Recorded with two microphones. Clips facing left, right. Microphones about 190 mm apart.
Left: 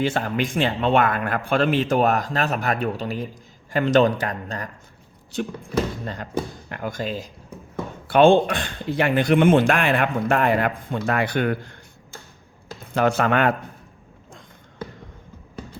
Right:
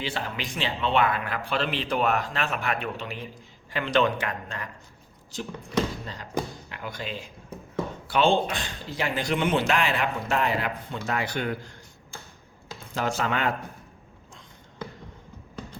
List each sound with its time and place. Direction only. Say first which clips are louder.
0.0 s a man's voice: left 9 dB; 50° left (ahead or behind)
6.7 s a man's voice: left 7 dB; 50° left (ahead or behind)
8.0 s speech: left 8 dB; 55° left (ahead or behind)
12.9 s speech: left 8 dB; 60° left (ahead or behind)